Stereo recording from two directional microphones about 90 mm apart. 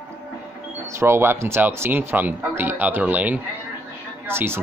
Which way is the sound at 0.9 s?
30° right (ahead or behind).